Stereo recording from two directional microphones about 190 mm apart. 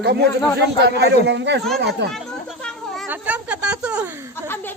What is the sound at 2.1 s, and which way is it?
Chatter, 5° left (ahead or behind).